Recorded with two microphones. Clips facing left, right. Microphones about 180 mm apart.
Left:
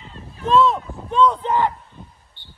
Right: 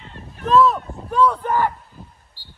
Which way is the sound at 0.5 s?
25° left (ahead or behind).